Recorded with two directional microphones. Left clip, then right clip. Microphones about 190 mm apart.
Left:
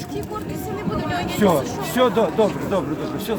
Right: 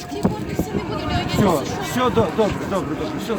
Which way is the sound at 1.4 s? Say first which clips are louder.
Left 3 dB; 35° left (ahead or behind).